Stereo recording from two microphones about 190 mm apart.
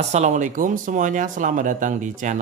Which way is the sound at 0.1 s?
40° right (ahead or behind).